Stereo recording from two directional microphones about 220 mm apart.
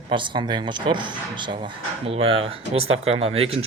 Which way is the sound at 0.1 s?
20° right (ahead or behind).